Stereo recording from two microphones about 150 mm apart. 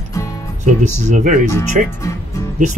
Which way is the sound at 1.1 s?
55° right (ahead or behind).